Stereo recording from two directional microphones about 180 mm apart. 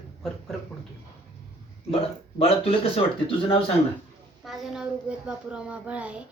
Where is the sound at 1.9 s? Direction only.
30° left (ahead or behind).